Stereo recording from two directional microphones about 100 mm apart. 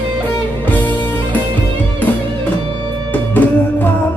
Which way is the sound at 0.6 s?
20° left (ahead or behind).